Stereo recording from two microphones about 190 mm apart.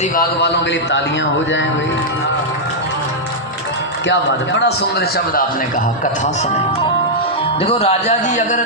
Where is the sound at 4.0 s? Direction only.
70° left (ahead or behind); by 8.6 s 40° left (ahead or behind).